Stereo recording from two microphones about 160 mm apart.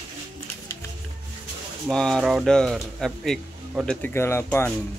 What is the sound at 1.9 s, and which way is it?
Speech, 5° left (ahead or behind).